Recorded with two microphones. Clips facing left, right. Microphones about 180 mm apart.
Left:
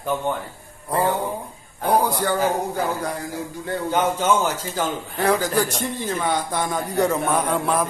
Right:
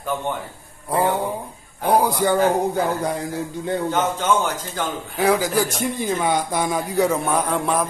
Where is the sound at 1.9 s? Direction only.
15° right (ahead or behind).